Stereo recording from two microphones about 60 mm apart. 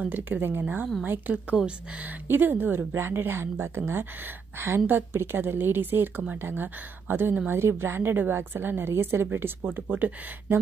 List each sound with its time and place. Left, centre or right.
0.0 s a woman's voice: right
1.0 s a woman's voice: right
9.8 s a woman's voice: right